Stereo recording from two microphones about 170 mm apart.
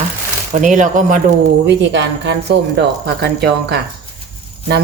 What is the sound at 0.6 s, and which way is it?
Speech, 50° right (ahead or behind).